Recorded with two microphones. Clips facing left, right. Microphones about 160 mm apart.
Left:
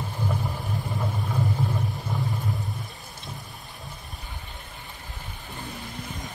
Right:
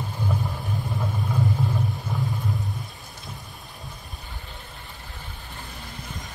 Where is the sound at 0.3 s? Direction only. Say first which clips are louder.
Right 2 dB; centre (ahead or behind).